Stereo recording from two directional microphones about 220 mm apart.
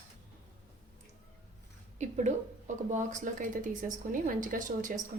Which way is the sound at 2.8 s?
35° right (ahead or behind).